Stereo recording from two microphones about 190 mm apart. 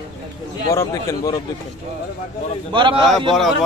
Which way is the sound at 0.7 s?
15° left (ahead or behind).